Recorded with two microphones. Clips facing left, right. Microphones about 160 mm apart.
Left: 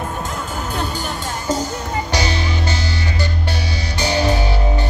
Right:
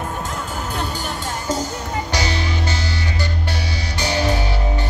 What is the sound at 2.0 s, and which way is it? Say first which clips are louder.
Music: left 2 dB; 25° left (ahead or behind).